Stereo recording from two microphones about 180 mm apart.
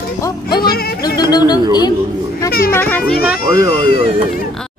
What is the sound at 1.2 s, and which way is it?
Speech, 20° left (ahead or behind).